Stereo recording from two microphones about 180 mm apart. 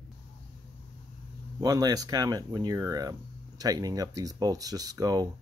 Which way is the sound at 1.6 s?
20° right (ahead or behind).